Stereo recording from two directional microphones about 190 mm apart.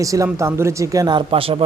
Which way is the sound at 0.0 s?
15° right (ahead or behind).